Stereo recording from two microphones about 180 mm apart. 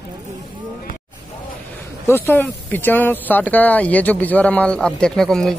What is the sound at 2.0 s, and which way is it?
Speech, 10° left (ahead or behind).